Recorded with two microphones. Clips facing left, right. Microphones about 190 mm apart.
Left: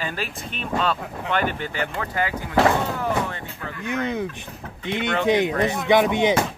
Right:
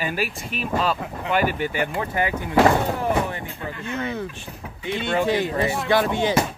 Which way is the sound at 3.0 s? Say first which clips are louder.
Right 2 dB; 20° right (ahead or behind).